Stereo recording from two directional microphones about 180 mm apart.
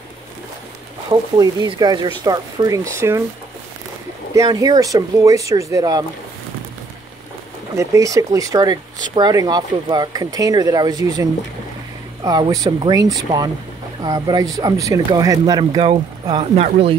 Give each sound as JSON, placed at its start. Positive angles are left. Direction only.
{"t": 1.4, "sound": "speech", "side_deg": -20}
{"t": 4.3, "sound": "speech", "side_deg": -20}
{"t": 7.7, "sound": "speech", "side_deg": -15}
{"t": 16.5, "sound": "speech", "side_deg": -35}